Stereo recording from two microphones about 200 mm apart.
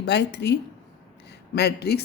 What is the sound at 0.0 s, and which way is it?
Speech, 60° left (ahead or behind).